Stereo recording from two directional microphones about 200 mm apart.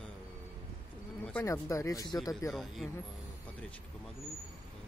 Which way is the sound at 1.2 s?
10° left (ahead or behind).